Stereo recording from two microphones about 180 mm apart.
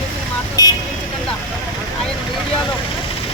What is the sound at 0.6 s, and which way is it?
Vehicle, 20° left (ahead or behind).